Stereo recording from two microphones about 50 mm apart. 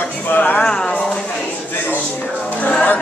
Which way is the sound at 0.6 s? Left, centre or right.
Left.